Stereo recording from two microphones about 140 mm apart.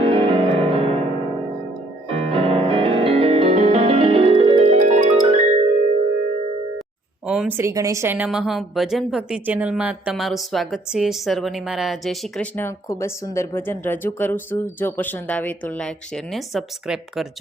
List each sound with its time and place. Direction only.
0.0 s music: 40° right (ahead or behind)
2.1 s music: 40° right (ahead or behind)
4.8 s music: 70° right (ahead or behind); by 5.6 s 55° right (ahead or behind)
7.3 s a woman's voice: 10° right (ahead or behind)
12.5 s speech: 20° left (ahead or behind); by 17.2 s 5° right (ahead or behind)